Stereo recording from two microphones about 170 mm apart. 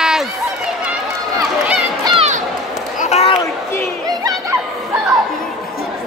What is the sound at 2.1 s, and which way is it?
Run, 40° right (ahead or behind).